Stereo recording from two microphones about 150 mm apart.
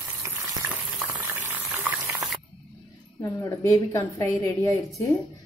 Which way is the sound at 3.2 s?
20° left (ahead or behind).